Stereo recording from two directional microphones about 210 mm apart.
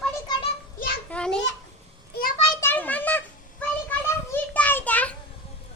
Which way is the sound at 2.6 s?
10° left (ahead or behind).